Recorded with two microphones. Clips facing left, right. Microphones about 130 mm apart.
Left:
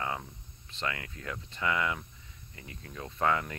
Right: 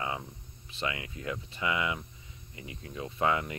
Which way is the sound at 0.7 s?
10° right (ahead or behind).